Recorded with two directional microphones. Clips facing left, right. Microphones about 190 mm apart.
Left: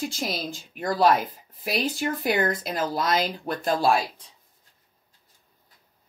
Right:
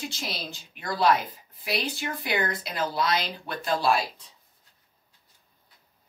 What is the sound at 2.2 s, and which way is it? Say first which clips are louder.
Speech: left 4 dB; 45° left (ahead or behind).